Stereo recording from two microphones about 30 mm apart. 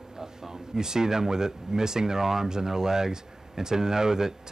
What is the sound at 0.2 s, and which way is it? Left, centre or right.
Speech, centre.